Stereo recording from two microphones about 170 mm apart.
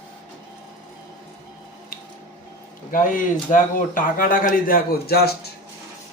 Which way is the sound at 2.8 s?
50° left (ahead or behind).